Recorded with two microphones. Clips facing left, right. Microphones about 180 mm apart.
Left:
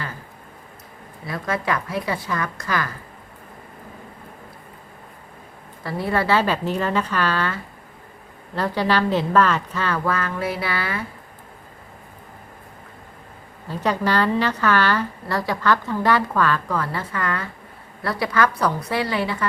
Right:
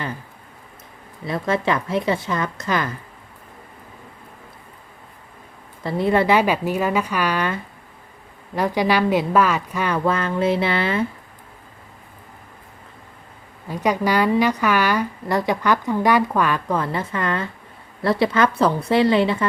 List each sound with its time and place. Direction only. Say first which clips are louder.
1.3 s a woman's voice: right 4 dB; 25° right (ahead or behind)
5.8 s a woman's voice: right 5 dB; 20° right (ahead or behind)
13.7 s a woman's voice: right 2 dB; 15° right (ahead or behind)